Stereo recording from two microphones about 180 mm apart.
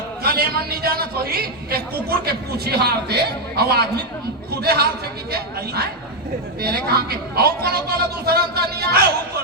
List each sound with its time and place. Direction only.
0.2 s a man's voice: 60° right (ahead or behind)